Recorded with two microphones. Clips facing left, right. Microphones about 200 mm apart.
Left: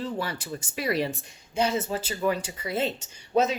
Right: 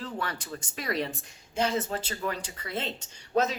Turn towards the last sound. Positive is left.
turn(degrees=5)  # may be behind; listen again after turning